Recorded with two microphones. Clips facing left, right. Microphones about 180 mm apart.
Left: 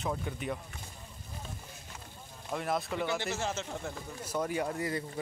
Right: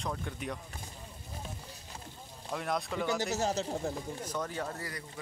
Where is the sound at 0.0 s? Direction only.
5° left (ahead or behind).